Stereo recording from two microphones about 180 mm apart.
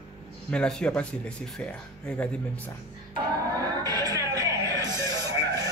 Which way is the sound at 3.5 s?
20° right (ahead or behind).